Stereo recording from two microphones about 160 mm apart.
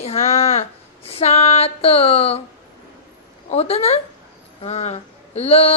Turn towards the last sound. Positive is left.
turn(degrees=40)  # may be behind; listen again after turning